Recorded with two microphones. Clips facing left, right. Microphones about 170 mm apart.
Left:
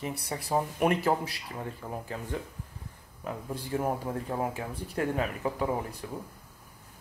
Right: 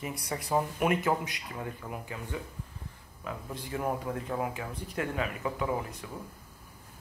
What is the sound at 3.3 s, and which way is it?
Speech, 35° left (ahead or behind).